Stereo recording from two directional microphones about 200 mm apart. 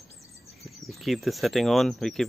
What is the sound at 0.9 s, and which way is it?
Speech, centre (ahead or behind).